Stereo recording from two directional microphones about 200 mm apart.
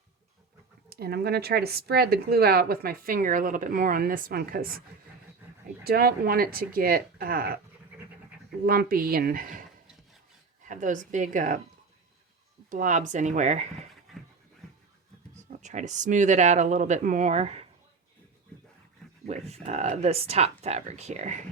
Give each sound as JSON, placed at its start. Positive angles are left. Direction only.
{"t": 0.9, "sound": "a woman's voice", "side_deg": -55}
{"t": 5.8, "sound": "a woman's voice", "side_deg": -50}
{"t": 8.6, "sound": "a woman's voice", "side_deg": -50}
{"t": 12.7, "sound": "speech", "side_deg": -40}
{"t": 15.4, "sound": "speech", "side_deg": -35}
{"t": 19.2, "sound": "speech", "side_deg": -35}